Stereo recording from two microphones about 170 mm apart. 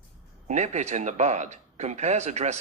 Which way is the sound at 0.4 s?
40° right (ahead or behind).